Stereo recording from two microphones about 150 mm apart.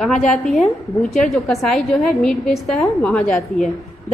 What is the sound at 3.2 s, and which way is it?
Speech, 60° left (ahead or behind).